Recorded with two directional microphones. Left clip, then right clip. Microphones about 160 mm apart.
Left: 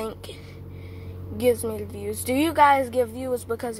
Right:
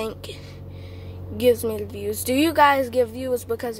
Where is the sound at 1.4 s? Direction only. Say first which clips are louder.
Right 3 dB; 20° right (ahead or behind).